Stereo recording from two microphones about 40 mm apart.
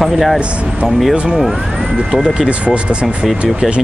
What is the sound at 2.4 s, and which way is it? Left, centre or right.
Speech, right.